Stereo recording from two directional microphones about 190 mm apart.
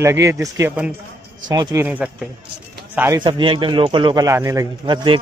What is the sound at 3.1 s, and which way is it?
Speech, 25° right (ahead or behind).